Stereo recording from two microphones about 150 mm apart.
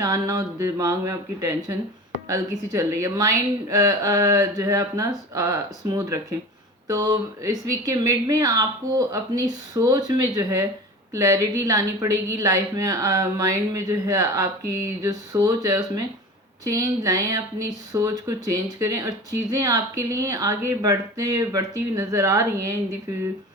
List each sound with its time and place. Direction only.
0.0 s speech: 25° right (ahead or behind)